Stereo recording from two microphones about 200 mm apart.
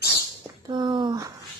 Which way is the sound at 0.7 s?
20° right (ahead or behind).